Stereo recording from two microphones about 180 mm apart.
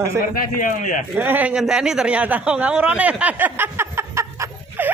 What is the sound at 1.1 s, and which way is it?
A man's voice, 10° right (ahead or behind).